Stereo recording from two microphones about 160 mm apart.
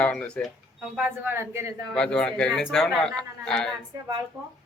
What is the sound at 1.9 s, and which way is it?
Speech, 5° left (ahead or behind).